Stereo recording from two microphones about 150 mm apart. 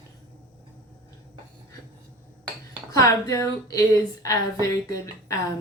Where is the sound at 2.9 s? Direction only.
20° left (ahead or behind).